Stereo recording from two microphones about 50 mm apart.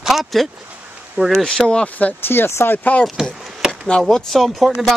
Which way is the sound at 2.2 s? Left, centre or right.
Left.